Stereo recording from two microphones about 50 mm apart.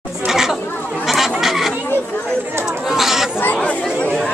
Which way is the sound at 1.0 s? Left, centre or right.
Centre.